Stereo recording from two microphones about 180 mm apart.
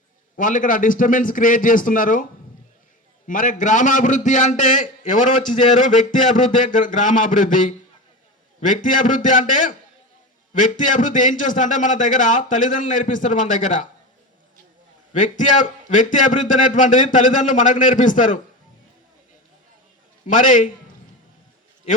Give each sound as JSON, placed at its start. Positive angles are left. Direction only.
{"t": 0.3, "sound": "a man's voice", "side_deg": 45}
{"t": 3.2, "sound": "a man's voice", "side_deg": 45}
{"t": 10.5, "sound": "a man's voice", "side_deg": 45}
{"t": 15.1, "sound": "a man's voice", "side_deg": 45}
{"t": 20.2, "sound": "a man's voice", "side_deg": 45}